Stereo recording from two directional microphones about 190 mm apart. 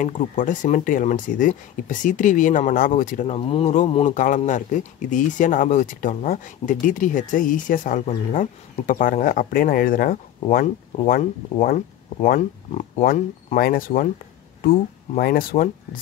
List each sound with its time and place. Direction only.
0.0 s speech: 45° left (ahead or behind)